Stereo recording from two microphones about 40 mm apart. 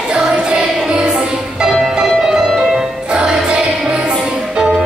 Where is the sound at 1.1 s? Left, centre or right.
Centre.